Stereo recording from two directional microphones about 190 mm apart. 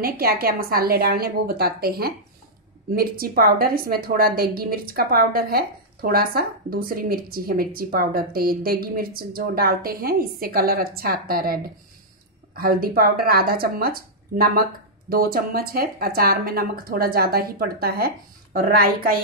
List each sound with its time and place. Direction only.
0.0 s a woman's voice: 55° right (ahead or behind)